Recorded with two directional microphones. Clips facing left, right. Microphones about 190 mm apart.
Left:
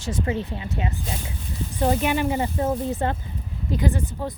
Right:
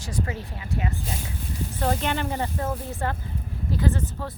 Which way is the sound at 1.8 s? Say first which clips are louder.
Left 5 dB; 10° left (ahead or behind).